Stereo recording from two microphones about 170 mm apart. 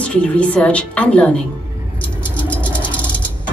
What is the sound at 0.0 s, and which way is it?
A woman's voice, 5° left (ahead or behind).